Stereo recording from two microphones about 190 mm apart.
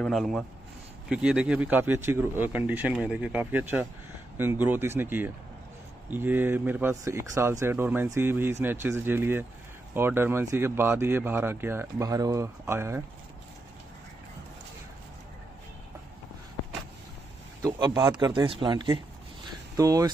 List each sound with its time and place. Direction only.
0.0 s speech: centre (ahead or behind); by 13.0 s 15° right (ahead or behind)
17.6 s speech: 20° right (ahead or behind)
19.4 s a sound: 15° right (ahead or behind)